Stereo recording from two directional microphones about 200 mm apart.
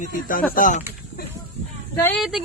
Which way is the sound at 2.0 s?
5° left (ahead or behind).